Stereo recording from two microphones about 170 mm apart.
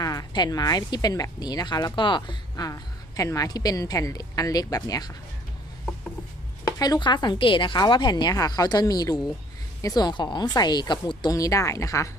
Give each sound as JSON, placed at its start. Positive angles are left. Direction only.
{"t": 0.0, "sound": "speech", "side_deg": 20}
{"t": 6.7, "sound": "speech", "side_deg": 20}